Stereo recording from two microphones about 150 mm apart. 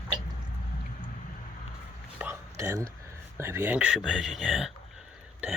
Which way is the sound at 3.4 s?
15° right (ahead or behind).